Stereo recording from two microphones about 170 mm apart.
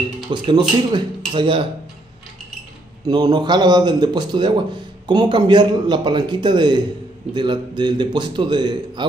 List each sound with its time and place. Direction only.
0.3 s a man's voice: 25° right (ahead or behind)
3.1 s a man's voice: 25° right (ahead or behind)